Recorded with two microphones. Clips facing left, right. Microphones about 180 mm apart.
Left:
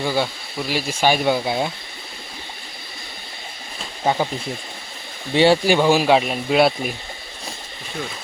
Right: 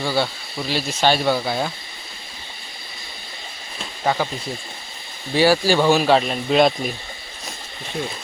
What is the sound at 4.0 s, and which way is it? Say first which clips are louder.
Speech: left 1 dB; 15° left (ahead or behind).